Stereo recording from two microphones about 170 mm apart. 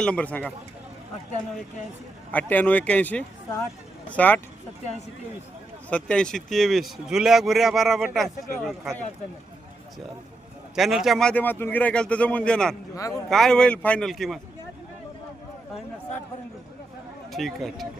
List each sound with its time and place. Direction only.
0.0 s speech: 5° left (ahead or behind)
2.3 s speech: 10° left (ahead or behind)
5.9 s a man's voice: 5° left (ahead or behind)
10.8 s a man's voice: centre (ahead or behind)
13.0 s speech: 20° left (ahead or behind)
13.3 s a man's voice: 5° left (ahead or behind)
17.3 s a man's voice: centre (ahead or behind)